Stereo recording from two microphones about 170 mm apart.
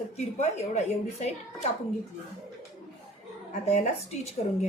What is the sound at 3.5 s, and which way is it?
Speech, 40° left (ahead or behind).